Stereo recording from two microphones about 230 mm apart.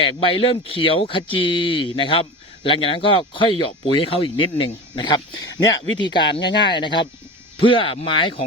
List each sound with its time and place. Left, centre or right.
0.0 s speech: left